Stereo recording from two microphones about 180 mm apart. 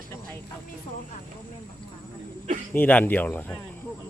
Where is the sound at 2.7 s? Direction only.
10° left (ahead or behind).